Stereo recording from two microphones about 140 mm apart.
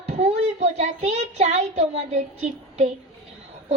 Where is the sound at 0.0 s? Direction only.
50° right (ahead or behind).